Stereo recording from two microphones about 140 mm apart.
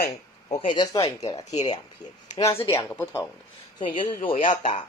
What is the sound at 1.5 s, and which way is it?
Speech, 50° left (ahead or behind).